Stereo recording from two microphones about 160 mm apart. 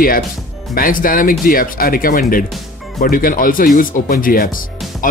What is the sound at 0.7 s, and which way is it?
Speech, 60° left (ahead or behind).